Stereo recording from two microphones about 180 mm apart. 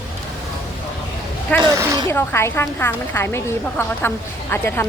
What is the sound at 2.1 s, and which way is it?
A woman's voice, 15° left (ahead or behind).